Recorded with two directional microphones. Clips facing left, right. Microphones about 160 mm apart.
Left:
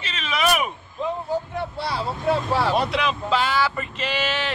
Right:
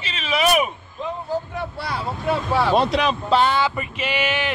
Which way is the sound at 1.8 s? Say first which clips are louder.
Left 3 dB; 30° left (ahead or behind).